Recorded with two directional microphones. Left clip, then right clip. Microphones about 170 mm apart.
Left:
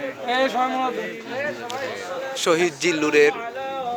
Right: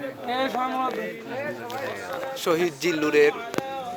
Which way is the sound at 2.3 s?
5° left (ahead or behind).